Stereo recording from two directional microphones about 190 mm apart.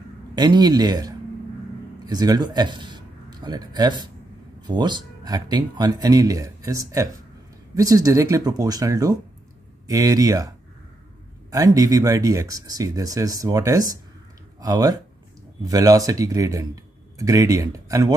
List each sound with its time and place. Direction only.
0.4 s speech: 20° right (ahead or behind)
11.5 s speech: 20° right (ahead or behind)